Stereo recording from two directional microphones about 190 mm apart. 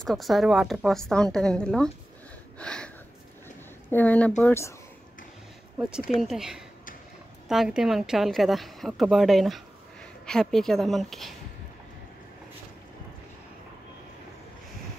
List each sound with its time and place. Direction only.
0.0 s a woman's voice: centre (ahead or behind)
3.9 s speech: 10° left (ahead or behind)
5.8 s a woman's voice: 5° right (ahead or behind)